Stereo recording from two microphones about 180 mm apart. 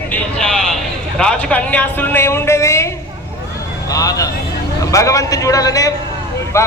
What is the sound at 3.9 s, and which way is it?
A man's voice, 20° left (ahead or behind).